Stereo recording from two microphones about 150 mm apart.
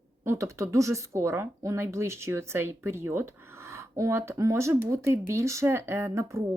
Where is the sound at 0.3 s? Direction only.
20° right (ahead or behind).